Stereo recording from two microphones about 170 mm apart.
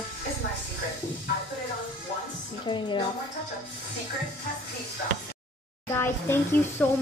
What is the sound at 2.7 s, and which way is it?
Speech, 30° left (ahead or behind).